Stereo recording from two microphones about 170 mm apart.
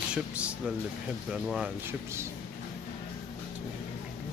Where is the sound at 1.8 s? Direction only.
15° right (ahead or behind).